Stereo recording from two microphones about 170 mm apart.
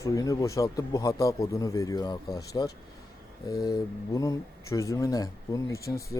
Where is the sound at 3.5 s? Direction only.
20° left (ahead or behind).